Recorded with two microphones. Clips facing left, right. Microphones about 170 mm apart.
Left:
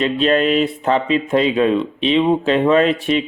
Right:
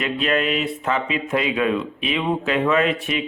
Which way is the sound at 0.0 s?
30° left (ahead or behind).